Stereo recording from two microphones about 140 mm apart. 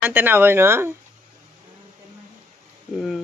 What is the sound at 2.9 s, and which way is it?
Speech, centre (ahead or behind).